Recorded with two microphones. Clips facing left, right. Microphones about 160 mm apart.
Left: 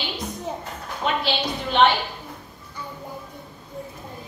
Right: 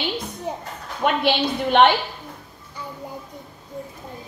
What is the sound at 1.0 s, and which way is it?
Speech, 60° right (ahead or behind).